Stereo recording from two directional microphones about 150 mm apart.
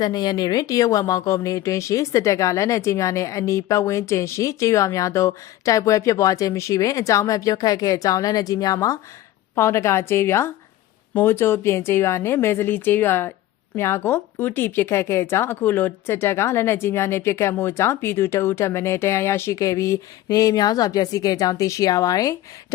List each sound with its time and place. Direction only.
0.0 s speech: 25° left (ahead or behind)